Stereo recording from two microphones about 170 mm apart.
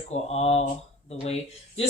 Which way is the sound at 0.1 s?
40° left (ahead or behind).